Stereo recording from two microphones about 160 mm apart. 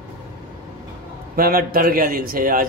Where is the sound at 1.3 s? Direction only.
70° right (ahead or behind).